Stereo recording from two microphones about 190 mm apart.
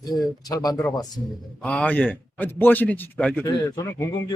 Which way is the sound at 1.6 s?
5° left (ahead or behind).